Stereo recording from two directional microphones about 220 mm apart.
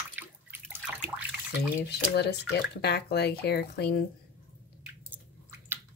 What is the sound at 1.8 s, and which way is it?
Speech, 50° left (ahead or behind).